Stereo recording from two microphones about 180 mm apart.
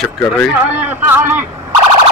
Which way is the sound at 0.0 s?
10° left (ahead or behind).